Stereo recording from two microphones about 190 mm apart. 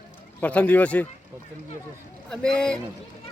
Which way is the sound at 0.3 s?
5° left (ahead or behind).